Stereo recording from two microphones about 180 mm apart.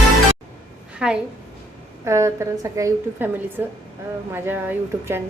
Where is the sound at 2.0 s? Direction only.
15° right (ahead or behind).